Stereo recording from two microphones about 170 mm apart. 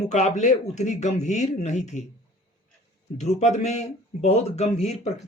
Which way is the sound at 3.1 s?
40° left (ahead or behind).